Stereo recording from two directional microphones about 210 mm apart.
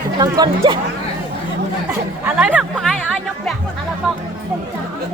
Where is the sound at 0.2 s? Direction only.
20° right (ahead or behind).